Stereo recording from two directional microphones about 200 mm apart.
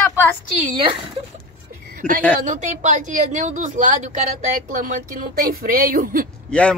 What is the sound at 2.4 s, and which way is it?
Speech, 40° right (ahead or behind).